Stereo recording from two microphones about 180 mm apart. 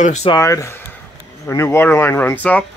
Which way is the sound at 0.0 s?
40° left (ahead or behind).